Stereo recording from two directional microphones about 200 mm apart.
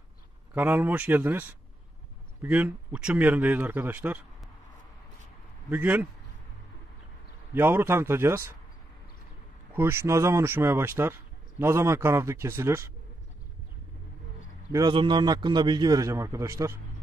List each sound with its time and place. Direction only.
0.6 s speech: 10° right (ahead or behind)
2.4 s speech: 5° right (ahead or behind)
5.7 s speech: 10° right (ahead or behind)
7.5 s speech: 10° right (ahead or behind)
9.8 s speech: 10° right (ahead or behind)
14.7 s a man's voice: 20° right (ahead or behind)